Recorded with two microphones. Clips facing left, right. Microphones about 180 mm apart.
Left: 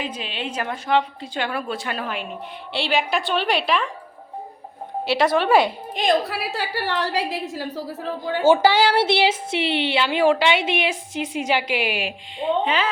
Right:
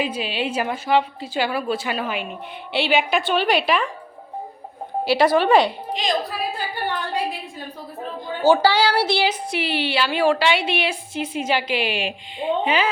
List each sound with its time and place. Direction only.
0.0 s a woman's voice: 10° right (ahead or behind)
5.0 s a woman's voice: centre (ahead or behind)
5.9 s a woman's voice: 60° left (ahead or behind); by 7.9 s 90° left
8.4 s a woman's voice: 20° left (ahead or behind)
12.4 s a woman's voice: 10° right (ahead or behind)